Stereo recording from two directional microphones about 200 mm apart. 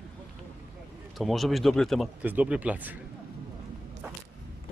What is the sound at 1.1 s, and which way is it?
Speech, centre (ahead or behind).